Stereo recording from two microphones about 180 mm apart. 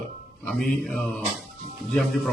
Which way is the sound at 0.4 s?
Centre (ahead or behind).